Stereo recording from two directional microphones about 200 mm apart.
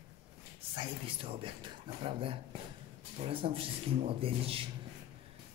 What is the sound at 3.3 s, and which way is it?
Speech, 25° right (ahead or behind).